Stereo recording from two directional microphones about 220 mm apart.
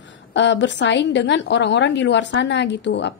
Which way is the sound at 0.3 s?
55° left (ahead or behind).